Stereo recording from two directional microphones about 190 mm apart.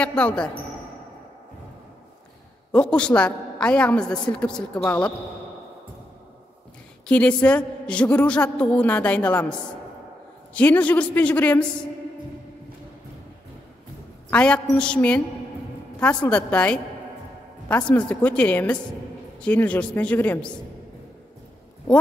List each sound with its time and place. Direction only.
0.0 s a woman's voice: 5° left (ahead or behind)
2.7 s a woman's voice: 5° left (ahead or behind)
7.1 s a woman's voice: 5° left (ahead or behind)
14.3 s a woman's voice: 5° left (ahead or behind)